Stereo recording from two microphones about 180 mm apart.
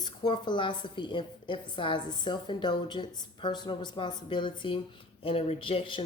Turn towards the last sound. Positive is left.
turn(degrees=30)  # may be behind; listen again after turning